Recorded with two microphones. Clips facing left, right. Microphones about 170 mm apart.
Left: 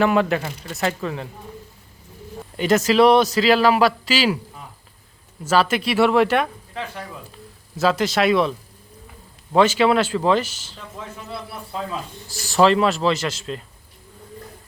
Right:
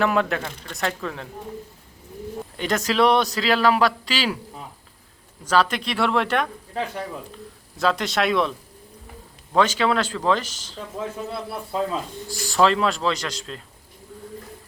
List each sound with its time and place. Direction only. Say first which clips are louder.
0.0 s a man's voice: left 3 dB; centre (ahead or behind)
2.6 s a man's voice: left 5 dB; 5° left (ahead or behind)
5.5 s a man's voice: left 2 dB; 5° left (ahead or behind)
7.8 s a man's voice: left 3 dB; centre (ahead or behind)
12.3 s a man's voice: left 3 dB; 5° left (ahead or behind)